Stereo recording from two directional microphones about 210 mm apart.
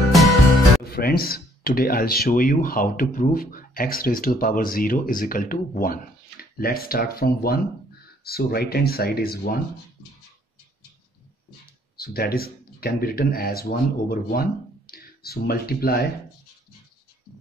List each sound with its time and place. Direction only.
0.1 s music: centre (ahead or behind)
0.8 s speech: 45° left (ahead or behind)
12.0 s speech: 45° left (ahead or behind)